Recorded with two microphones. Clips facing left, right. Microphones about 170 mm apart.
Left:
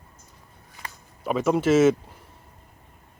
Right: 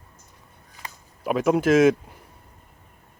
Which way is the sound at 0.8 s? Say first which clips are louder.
Even; 5° right (ahead or behind).